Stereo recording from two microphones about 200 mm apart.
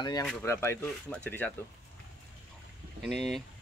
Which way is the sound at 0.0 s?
20° left (ahead or behind).